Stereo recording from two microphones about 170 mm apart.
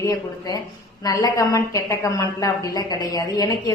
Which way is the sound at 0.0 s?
20° left (ahead or behind).